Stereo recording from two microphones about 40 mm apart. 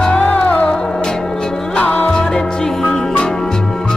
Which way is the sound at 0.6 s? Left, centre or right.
Centre.